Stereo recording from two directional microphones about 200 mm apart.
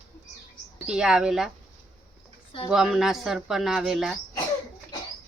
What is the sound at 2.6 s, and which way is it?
Speech, centre (ahead or behind).